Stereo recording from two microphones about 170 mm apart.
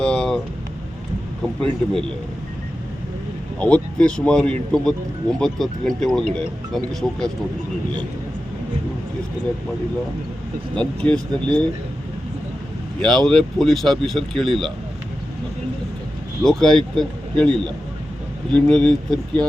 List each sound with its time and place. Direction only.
0.0 s a sound: 5° left (ahead or behind)
3.6 s speech: 5° left (ahead or behind)
10.8 s speech: 5° left (ahead or behind)
13.0 s speech: centre (ahead or behind)
16.4 s speech: 5° left (ahead or behind)
18.5 s speech: 5° left (ahead or behind)